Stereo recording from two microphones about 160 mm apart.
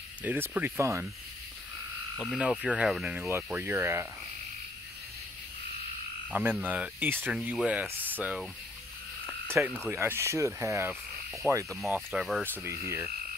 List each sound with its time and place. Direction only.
0.2 s speech: 10° right (ahead or behind)
2.1 s speech: 5° left (ahead or behind)
2.6 s speech: 10° right (ahead or behind)
3.2 s speech: 15° right (ahead or behind)
6.3 s speech: 10° right (ahead or behind)
9.2 s a sound: 15° right (ahead or behind)
9.8 s speech: 15° right (ahead or behind)
12.4 s speech: 15° right (ahead or behind)